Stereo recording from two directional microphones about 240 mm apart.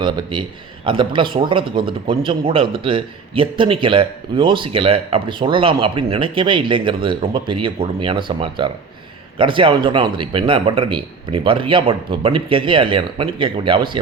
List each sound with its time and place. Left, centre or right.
0.0 s speech: centre